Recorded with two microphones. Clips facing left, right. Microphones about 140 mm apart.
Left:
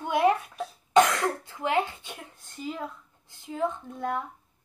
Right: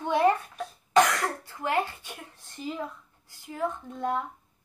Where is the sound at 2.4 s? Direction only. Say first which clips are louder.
Even; centre (ahead or behind).